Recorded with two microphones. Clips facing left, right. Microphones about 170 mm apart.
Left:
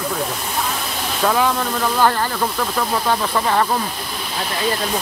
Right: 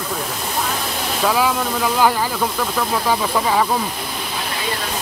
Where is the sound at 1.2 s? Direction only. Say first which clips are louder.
Left 1 dB; 5° right (ahead or behind).